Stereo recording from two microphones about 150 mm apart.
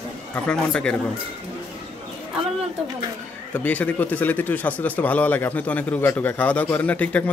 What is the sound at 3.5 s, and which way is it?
Speech, 10° left (ahead or behind).